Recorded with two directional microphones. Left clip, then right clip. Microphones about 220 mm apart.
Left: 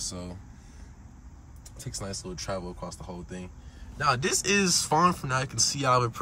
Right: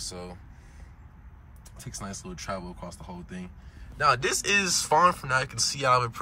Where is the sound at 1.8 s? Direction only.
10° left (ahead or behind).